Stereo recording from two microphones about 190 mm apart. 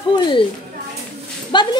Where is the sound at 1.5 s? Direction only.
25° left (ahead or behind).